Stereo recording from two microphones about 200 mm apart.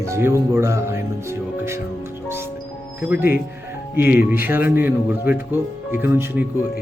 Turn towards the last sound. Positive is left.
turn(degrees=-10)  # may be behind; listen again after turning